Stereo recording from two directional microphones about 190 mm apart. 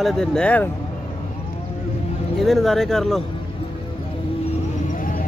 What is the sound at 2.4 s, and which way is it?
Speech, centre (ahead or behind).